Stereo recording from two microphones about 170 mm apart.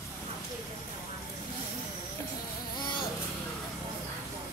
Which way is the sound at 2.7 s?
25° left (ahead or behind).